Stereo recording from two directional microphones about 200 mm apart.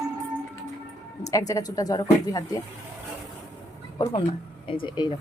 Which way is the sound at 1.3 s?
15° left (ahead or behind).